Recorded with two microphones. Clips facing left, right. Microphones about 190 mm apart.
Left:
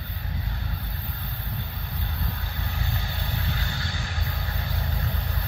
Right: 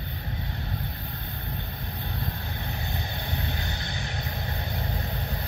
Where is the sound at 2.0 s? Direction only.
20° right (ahead or behind).